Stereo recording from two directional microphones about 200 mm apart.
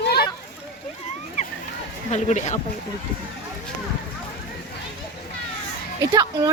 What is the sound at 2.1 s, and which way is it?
Speech, 35° left (ahead or behind).